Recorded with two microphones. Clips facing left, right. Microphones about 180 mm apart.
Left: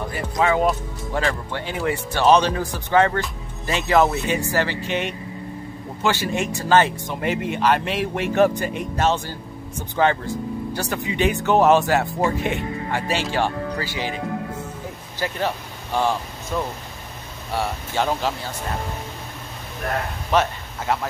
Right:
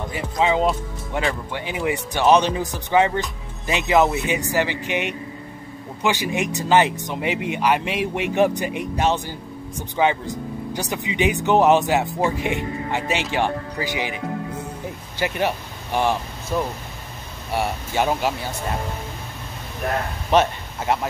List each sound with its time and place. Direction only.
0.1 s speech: 20° right (ahead or behind)
15.1 s speech: 15° right (ahead or behind)
20.2 s speech: 20° right (ahead or behind)